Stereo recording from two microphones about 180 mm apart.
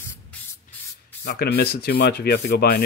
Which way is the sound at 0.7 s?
45° left (ahead or behind).